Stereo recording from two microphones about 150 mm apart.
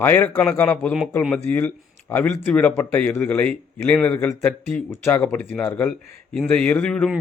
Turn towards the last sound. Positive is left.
turn(degrees=5)  # may be behind; listen again after turning